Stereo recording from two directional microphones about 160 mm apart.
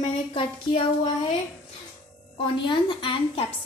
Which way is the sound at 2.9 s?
30° left (ahead or behind).